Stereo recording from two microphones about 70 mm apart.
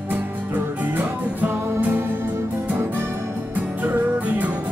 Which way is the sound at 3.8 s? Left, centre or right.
Right.